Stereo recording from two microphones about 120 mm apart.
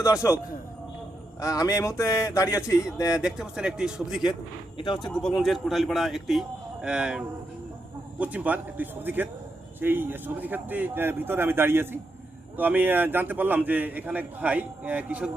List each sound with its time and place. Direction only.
0.0 s speech: 25° left (ahead or behind)
1.4 s speech: 30° left (ahead or behind)
3.2 s a man's voice: 5° right (ahead or behind)